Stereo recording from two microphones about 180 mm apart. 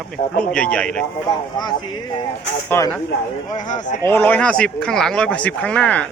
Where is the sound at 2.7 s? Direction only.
15° left (ahead or behind).